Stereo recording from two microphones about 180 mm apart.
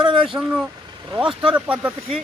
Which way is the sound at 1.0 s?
25° right (ahead or behind).